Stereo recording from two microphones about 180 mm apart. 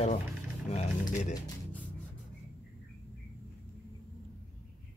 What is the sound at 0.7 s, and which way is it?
Speech, 40° left (ahead or behind).